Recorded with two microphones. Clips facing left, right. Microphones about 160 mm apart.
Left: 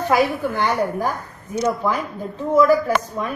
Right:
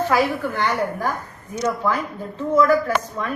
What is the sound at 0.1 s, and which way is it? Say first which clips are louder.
A woman's voice: left 2 dB; 15° left (ahead or behind).